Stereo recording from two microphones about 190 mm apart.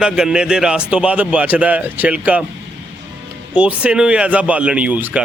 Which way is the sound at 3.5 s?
5° right (ahead or behind).